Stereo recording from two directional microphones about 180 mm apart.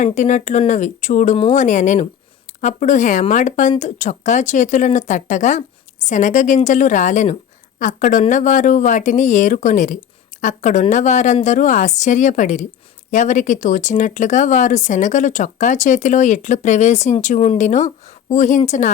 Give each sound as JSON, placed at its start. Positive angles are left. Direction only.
{"t": 0.0, "sound": "speech", "side_deg": 40}